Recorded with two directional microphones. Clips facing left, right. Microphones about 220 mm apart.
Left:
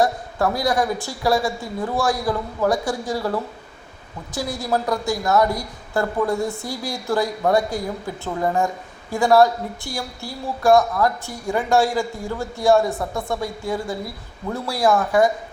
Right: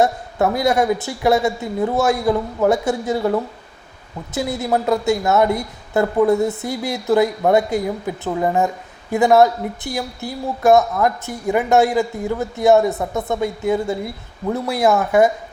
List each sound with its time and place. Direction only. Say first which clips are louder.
0.0 s speech: right 3 dB; 20° right (ahead or behind)